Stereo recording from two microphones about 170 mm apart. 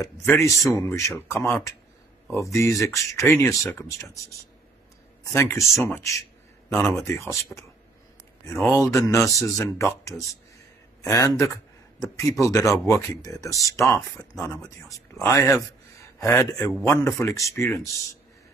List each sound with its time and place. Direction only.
0.0 s speech: 15° left (ahead or behind)
5.2 s speech: 15° left (ahead or behind)